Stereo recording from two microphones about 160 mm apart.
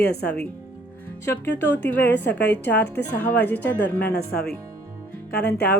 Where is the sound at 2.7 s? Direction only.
10° left (ahead or behind).